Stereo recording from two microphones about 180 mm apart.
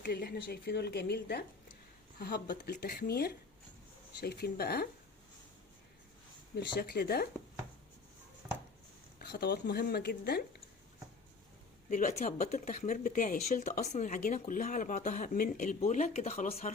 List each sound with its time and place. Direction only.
0.0 s a woman's voice: 65° left (ahead or behind)
6.6 s a woman's voice: 65° left (ahead or behind)
9.1 s a woman's voice: 65° left (ahead or behind)
11.9 s speech: 45° left (ahead or behind)